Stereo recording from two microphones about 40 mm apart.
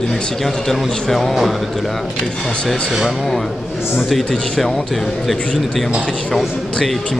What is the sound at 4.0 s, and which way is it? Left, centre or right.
Speech, centre.